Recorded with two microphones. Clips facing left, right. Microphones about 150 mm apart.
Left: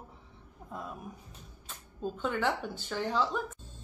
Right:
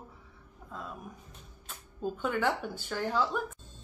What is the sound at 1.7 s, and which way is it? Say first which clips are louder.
Speech: right 2 dB; 5° right (ahead or behind).